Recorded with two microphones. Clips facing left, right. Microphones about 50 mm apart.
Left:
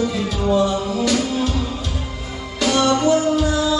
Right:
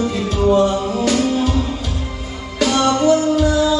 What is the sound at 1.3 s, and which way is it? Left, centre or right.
Music, centre.